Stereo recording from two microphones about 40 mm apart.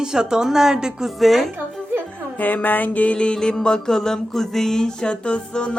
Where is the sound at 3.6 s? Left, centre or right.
Centre.